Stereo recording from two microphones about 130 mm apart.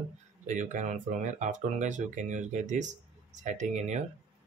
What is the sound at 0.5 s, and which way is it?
Speech, 70° right (ahead or behind).